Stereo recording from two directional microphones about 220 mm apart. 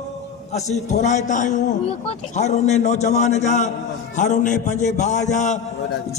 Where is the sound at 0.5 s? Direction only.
30° left (ahead or behind).